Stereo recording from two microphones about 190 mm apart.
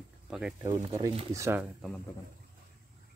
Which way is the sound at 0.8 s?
15° right (ahead or behind).